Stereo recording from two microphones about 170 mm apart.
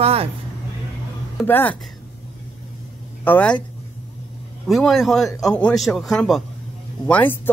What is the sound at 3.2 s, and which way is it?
Speech, 10° left (ahead or behind).